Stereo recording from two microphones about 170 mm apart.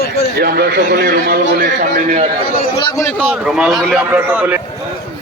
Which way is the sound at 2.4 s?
60° left (ahead or behind).